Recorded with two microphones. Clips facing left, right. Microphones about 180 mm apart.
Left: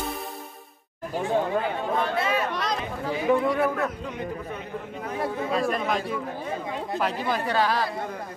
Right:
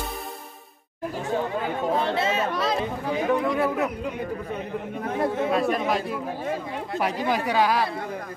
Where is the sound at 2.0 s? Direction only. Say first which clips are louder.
Right 1 dB; 25° right (ahead or behind).